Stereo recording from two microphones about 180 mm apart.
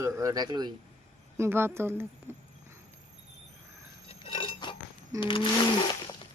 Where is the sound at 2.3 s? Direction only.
15° right (ahead or behind).